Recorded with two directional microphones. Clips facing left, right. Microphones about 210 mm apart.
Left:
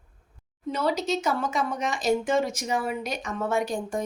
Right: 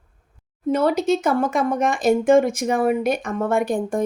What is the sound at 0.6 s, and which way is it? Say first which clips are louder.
Speech: right 8 dB; 55° right (ahead or behind).